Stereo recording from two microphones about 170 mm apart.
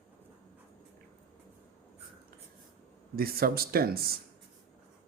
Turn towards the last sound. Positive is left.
turn(degrees=-60)  # may be behind; listen again after turning